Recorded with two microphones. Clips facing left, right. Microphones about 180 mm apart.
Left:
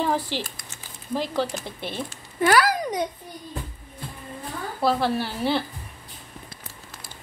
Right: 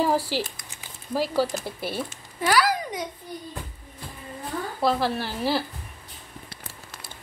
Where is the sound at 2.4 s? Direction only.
50° left (ahead or behind).